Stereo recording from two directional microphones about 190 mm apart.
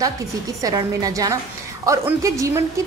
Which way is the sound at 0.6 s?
20° right (ahead or behind).